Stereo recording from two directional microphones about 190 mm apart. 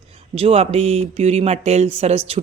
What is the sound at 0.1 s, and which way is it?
Speech, 30° right (ahead or behind).